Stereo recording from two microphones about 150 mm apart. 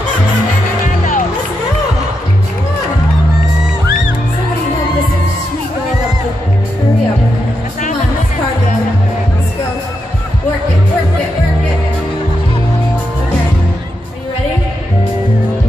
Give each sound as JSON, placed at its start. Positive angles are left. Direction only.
{"t": 0.8, "sound": "music", "side_deg": 60}